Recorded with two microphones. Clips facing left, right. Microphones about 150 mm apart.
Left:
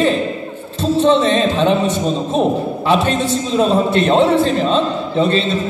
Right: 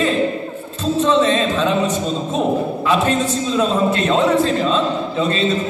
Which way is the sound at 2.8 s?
30° left (ahead or behind).